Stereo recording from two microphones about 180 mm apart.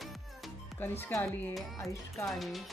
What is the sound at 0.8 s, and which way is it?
Speech, 10° left (ahead or behind).